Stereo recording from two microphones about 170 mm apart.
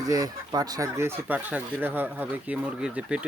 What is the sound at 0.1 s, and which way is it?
Speech, 20° right (ahead or behind).